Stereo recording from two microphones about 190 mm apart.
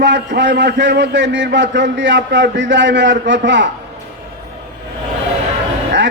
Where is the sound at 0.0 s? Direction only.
70° right (ahead or behind).